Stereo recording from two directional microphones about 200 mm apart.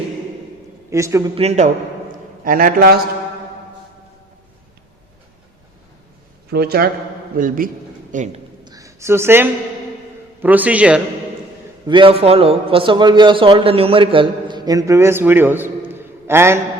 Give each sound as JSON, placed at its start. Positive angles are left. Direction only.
{"t": 0.9, "sound": "a man's voice", "side_deg": -15}
{"t": 1.4, "sound": "a man's voice", "side_deg": -35}
{"t": 6.5, "sound": "a man's voice", "side_deg": -50}
{"t": 8.6, "sound": "a sound", "side_deg": -15}
{"t": 10.4, "sound": "a man's voice", "side_deg": -10}
{"t": 11.9, "sound": "a man's voice", "side_deg": -25}
{"t": 15.9, "sound": "a sound", "side_deg": -10}